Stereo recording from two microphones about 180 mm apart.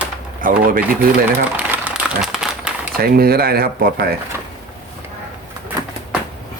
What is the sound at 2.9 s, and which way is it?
Speech, 55° right (ahead or behind).